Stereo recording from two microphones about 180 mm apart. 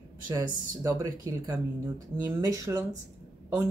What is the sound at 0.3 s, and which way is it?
Speech, 20° right (ahead or behind).